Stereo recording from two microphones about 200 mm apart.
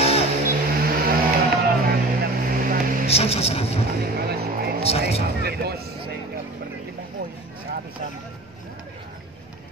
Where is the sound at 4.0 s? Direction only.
50° right (ahead or behind).